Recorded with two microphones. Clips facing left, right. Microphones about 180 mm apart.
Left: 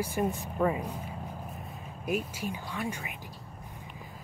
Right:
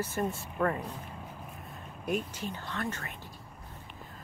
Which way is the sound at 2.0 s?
5° left (ahead or behind).